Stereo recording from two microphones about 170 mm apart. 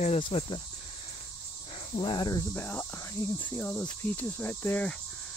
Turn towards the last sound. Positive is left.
turn(degrees=10)  # may be behind; listen again after turning